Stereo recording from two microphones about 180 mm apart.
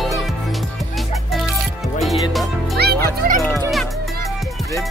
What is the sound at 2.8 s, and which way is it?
Music, 65° right (ahead or behind).